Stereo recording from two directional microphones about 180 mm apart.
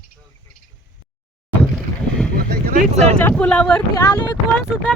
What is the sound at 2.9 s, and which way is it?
Speech, 35° right (ahead or behind).